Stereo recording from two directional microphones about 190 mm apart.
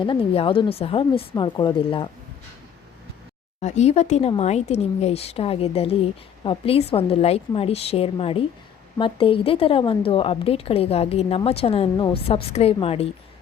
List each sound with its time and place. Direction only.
0.0 s a woman's voice: 25° left (ahead or behind)
3.6 s a woman's voice: 35° left (ahead or behind)